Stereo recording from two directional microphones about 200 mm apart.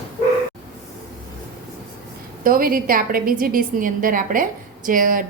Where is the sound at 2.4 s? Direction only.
45° right (ahead or behind).